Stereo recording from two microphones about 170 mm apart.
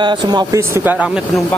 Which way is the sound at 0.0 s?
25° right (ahead or behind).